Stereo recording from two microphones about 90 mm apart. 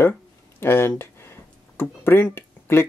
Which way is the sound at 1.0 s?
25° left (ahead or behind).